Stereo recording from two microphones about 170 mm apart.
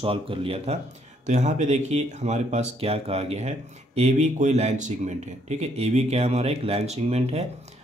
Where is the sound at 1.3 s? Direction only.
45° right (ahead or behind).